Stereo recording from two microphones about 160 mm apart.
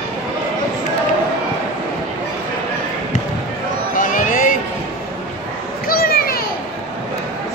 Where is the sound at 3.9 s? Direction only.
55° left (ahead or behind).